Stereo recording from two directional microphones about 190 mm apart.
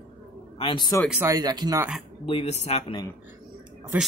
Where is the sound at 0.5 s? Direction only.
25° left (ahead or behind).